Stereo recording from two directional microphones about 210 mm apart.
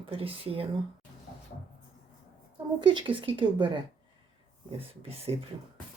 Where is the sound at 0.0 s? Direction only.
25° right (ahead or behind).